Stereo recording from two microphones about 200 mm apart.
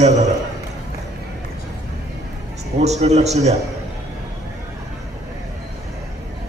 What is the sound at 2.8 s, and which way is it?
Speech, 35° right (ahead or behind).